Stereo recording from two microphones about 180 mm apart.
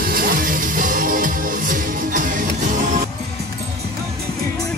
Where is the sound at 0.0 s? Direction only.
55° right (ahead or behind).